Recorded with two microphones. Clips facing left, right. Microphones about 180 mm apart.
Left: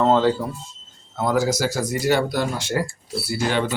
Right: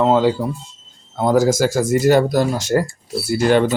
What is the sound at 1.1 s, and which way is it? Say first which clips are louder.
Speech: right 6 dB; 30° right (ahead or behind).